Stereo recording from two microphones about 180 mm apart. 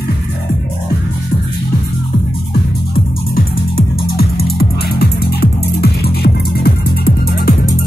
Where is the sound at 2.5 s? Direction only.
55° left (ahead or behind).